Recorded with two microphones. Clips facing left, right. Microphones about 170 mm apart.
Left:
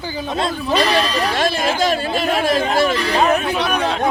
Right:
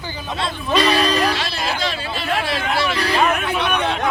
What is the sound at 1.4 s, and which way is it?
Speech, 50° left (ahead or behind).